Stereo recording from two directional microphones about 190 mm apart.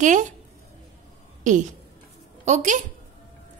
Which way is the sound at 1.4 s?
40° right (ahead or behind).